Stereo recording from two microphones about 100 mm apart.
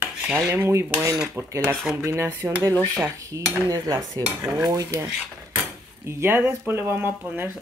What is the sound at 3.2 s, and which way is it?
Cutlery, 35° right (ahead or behind).